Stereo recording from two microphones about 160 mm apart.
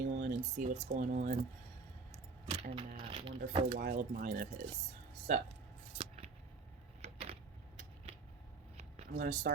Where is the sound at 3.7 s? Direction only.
65° right (ahead or behind).